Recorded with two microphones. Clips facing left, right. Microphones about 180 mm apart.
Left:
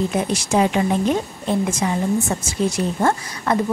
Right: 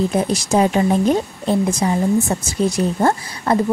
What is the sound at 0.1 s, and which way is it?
Speech, 35° right (ahead or behind).